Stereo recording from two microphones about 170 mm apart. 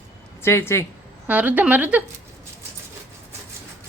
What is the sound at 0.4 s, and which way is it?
Speech, 15° left (ahead or behind).